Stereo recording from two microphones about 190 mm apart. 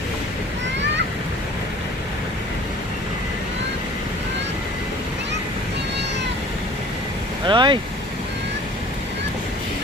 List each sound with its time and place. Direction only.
7.4 s speech: 25° right (ahead or behind)